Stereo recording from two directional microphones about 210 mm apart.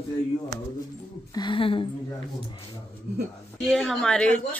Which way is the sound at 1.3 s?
20° left (ahead or behind).